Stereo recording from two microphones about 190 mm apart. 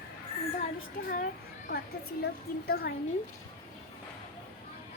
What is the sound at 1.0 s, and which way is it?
A child's voice, 50° left (ahead or behind).